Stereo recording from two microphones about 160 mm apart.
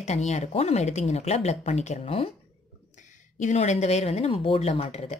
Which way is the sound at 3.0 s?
50° left (ahead or behind).